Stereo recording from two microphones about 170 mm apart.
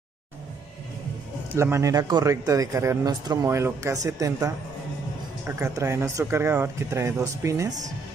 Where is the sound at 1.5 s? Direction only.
15° right (ahead or behind).